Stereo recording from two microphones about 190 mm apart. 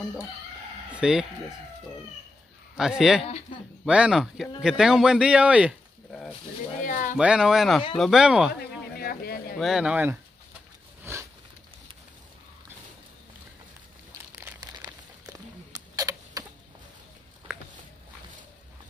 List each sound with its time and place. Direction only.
0.9 s speech: 5° right (ahead or behind)
2.8 s speech: centre (ahead or behind)
6.8 s speech: 45° left (ahead or behind)
7.2 s speech: 5° right (ahead or behind)
8.9 s a sound: 55° left (ahead or behind)
9.6 s speech: centre (ahead or behind)
11.1 s a sound: 15° right (ahead or behind)
14.4 s crumpling: 15° right (ahead or behind)